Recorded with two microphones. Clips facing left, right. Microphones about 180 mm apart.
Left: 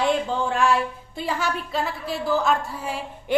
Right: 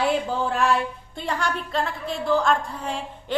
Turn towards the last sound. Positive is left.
turn(degrees=10)  # may be behind; listen again after turning